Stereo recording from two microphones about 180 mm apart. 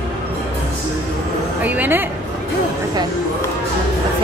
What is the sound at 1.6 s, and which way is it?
Speech, 10° right (ahead or behind).